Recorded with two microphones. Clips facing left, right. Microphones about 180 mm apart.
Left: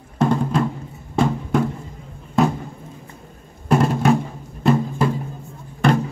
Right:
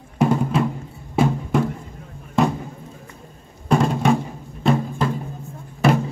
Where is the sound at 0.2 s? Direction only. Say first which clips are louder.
Even; 5° right (ahead or behind).